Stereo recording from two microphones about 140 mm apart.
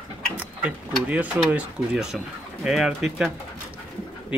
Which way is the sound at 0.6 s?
10° right (ahead or behind).